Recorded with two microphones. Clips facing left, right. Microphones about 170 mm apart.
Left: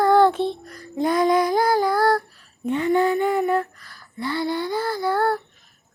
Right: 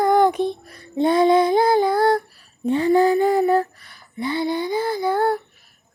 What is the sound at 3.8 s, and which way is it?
Child singing, 20° right (ahead or behind).